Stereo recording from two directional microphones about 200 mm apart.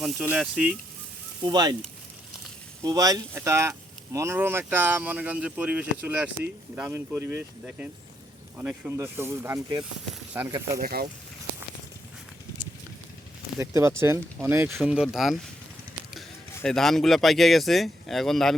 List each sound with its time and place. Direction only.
0.0 s speech: 5° right (ahead or behind)
1.4 s speech: 20° right (ahead or behind)
2.8 s speech: 20° right (ahead or behind)
10.8 s speech: 45° right (ahead or behind)
13.6 s speech: 15° right (ahead or behind)
16.6 s speech: 5° left (ahead or behind)